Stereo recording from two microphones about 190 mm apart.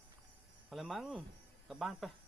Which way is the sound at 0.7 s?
Centre (ahead or behind).